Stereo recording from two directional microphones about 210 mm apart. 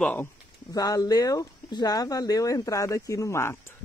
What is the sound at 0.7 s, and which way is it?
Speech, 15° left (ahead or behind).